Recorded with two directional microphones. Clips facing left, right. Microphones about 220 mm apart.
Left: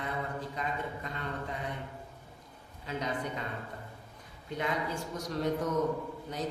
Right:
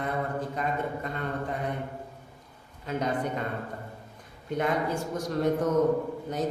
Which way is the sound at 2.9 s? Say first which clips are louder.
Right 6 dB; 50° right (ahead or behind).